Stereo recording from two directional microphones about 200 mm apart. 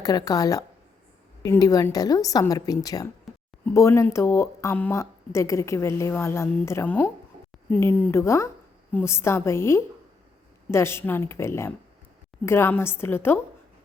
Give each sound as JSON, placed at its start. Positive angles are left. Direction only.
{"t": 0.0, "sound": "speech", "side_deg": 20}